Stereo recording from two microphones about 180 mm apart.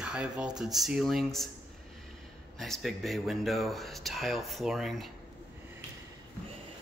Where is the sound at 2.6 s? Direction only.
Centre (ahead or behind).